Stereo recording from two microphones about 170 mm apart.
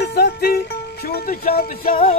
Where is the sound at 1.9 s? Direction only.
35° left (ahead or behind).